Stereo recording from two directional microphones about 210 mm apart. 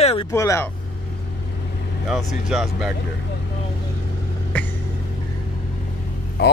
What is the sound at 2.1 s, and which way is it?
Speech, centre (ahead or behind).